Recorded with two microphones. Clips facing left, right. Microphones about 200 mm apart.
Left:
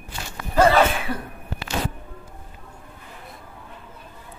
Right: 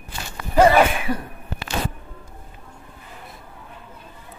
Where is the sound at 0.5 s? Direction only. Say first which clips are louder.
Right 2 dB; 15° right (ahead or behind).